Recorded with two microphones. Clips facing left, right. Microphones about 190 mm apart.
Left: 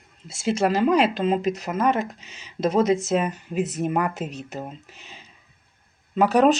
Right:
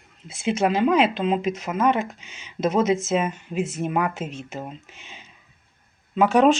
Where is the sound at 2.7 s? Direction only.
5° right (ahead or behind).